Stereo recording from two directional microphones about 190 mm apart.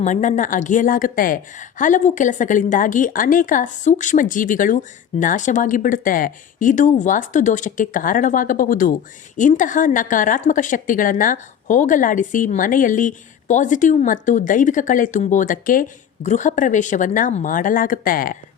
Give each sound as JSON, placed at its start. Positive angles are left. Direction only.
{"t": 0.0, "sound": "a woman's voice", "side_deg": 40}